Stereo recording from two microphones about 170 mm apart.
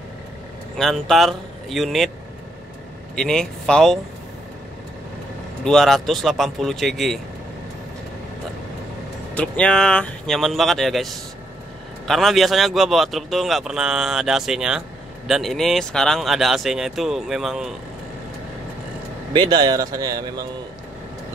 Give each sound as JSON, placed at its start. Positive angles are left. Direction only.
{"t": 0.7, "sound": "speech", "side_deg": 0}
{"t": 3.2, "sound": "speech", "side_deg": 5}
{"t": 5.6, "sound": "speech", "side_deg": 5}
{"t": 9.3, "sound": "speech", "side_deg": 5}
{"t": 19.3, "sound": "speech", "side_deg": -25}